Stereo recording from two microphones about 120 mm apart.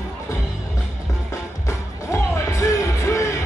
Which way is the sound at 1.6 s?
25° left (ahead or behind).